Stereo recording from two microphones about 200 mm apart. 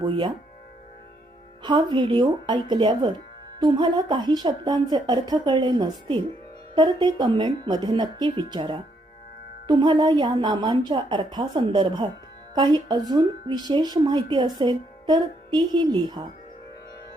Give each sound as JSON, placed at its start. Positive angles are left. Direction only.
{"t": 0.0, "sound": "a woman's voice", "side_deg": -25}
{"t": 1.6, "sound": "a woman's voice", "side_deg": -20}